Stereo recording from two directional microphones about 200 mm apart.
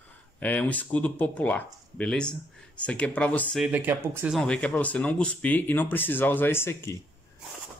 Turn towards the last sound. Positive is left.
turn(degrees=10)  # may be behind; listen again after turning